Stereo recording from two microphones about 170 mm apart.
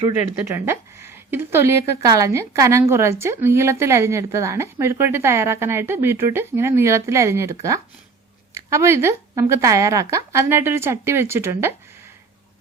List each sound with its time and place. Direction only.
0.4 s a woman's voice: 15° right (ahead or behind)
8.5 s a woman's voice: 15° right (ahead or behind)